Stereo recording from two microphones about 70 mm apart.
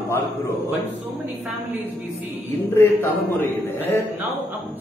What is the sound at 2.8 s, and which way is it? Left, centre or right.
A man's voice, left.